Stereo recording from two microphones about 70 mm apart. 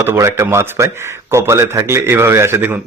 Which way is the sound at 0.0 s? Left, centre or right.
Right.